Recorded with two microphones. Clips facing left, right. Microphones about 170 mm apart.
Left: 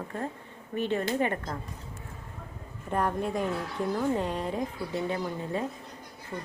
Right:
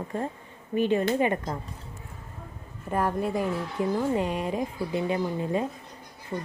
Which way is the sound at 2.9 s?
5° right (ahead or behind).